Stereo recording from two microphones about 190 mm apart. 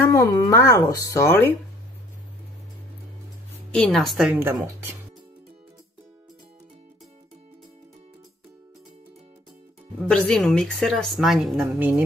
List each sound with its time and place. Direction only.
0.0 s speech: 15° left (ahead or behind)
3.7 s a woman's voice: 5° left (ahead or behind); by 4.9 s 15° right (ahead or behind)
10.0 s a woman's voice: 5° left (ahead or behind)